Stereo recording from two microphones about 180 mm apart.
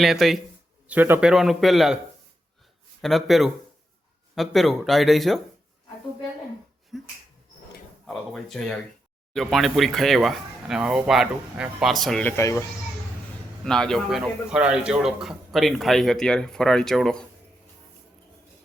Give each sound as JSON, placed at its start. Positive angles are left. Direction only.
{"t": 0.0, "sound": "a man's voice", "side_deg": 0}
{"t": 0.9, "sound": "a man's voice", "side_deg": -10}
{"t": 3.0, "sound": "a man's voice", "side_deg": 0}
{"t": 6.9, "sound": "finger snapping", "side_deg": 0}
{"t": 8.0, "sound": "a man's voice", "side_deg": 0}
{"t": 12.4, "sound": "speech", "side_deg": 15}
{"t": 13.7, "sound": "a man's voice", "side_deg": 5}